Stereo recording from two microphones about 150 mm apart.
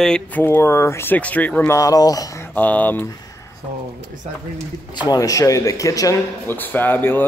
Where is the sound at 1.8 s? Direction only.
25° left (ahead or behind).